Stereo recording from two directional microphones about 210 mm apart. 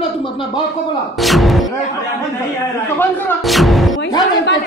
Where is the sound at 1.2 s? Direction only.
Centre (ahead or behind).